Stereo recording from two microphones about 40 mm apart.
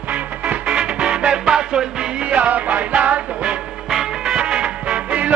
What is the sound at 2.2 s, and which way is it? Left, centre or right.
Music, right.